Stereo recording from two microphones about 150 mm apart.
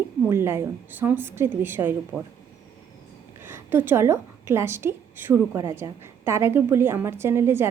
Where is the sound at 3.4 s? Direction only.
15° right (ahead or behind).